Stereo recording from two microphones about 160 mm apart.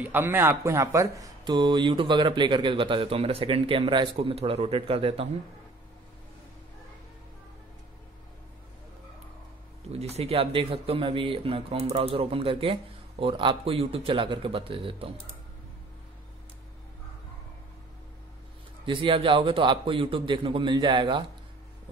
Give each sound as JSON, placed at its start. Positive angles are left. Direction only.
{"t": 0.0, "sound": "speech", "side_deg": -10}
{"t": 9.9, "sound": "speech", "side_deg": -40}
{"t": 18.9, "sound": "speech", "side_deg": -30}